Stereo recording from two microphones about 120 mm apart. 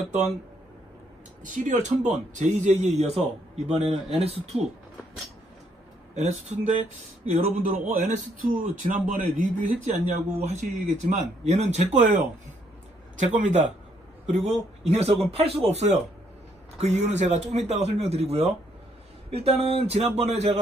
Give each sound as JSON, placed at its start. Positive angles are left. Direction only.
{"t": 1.4, "sound": "speech", "side_deg": -90}
{"t": 6.1, "sound": "speech", "side_deg": -75}
{"t": 7.2, "sound": "speech", "side_deg": -60}
{"t": 7.9, "sound": "a man's voice", "side_deg": -90}
{"t": 13.1, "sound": "a man's voice", "side_deg": -90}
{"t": 14.3, "sound": "speech", "side_deg": -65}